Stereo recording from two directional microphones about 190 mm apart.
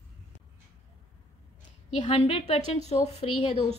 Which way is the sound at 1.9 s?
35° left (ahead or behind).